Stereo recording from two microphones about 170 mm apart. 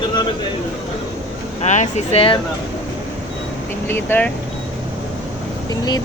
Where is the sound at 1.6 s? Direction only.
45° left (ahead or behind).